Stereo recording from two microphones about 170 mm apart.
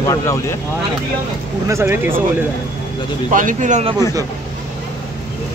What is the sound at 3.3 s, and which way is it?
Speech, 50° right (ahead or behind).